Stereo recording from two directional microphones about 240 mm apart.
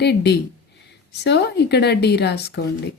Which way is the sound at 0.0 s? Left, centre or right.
Left.